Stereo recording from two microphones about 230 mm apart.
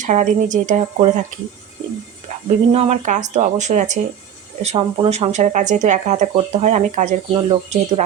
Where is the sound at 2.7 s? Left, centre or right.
Right.